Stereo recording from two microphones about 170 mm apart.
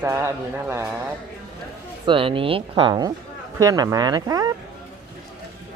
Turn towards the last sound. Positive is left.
turn(degrees=-20)  # may be behind; listen again after turning